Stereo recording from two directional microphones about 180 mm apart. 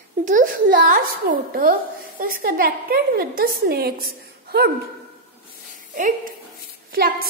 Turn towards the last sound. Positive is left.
turn(degrees=-55)  # may be behind; listen again after turning